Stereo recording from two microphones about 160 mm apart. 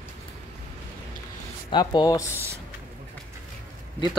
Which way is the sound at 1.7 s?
30° left (ahead or behind).